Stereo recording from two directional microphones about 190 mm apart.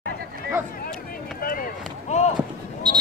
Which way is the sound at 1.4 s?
50° left (ahead or behind).